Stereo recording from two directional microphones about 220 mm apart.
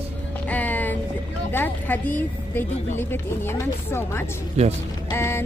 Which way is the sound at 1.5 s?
10° left (ahead or behind).